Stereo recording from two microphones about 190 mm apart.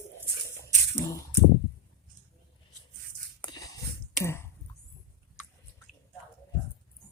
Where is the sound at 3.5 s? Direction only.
20° left (ahead or behind).